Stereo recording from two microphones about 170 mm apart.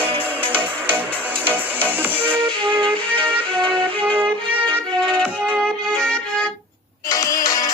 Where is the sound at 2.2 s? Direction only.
30° right (ahead or behind).